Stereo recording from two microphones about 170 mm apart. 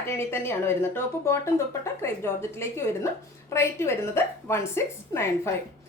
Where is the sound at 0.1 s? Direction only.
15° left (ahead or behind).